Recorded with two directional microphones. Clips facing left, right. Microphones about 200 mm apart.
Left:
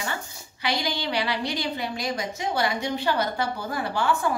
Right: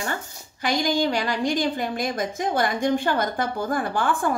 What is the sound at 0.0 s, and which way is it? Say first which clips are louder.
A woman's voice: right 3 dB; 45° right (ahead or behind).